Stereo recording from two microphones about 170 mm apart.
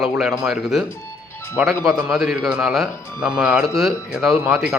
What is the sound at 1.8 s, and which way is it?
A man's voice, 5° right (ahead or behind).